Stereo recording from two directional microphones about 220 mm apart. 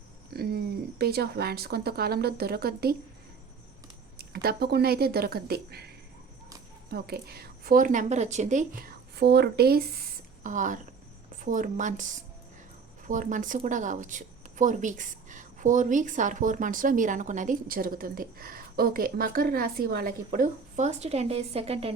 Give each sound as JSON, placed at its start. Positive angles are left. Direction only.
{"t": 0.3, "sound": "speech", "side_deg": -45}
{"t": 4.2, "sound": "a woman's voice", "side_deg": -45}
{"t": 6.9, "sound": "a woman's voice", "side_deg": -45}
{"t": 13.1, "sound": "a woman's voice", "side_deg": -35}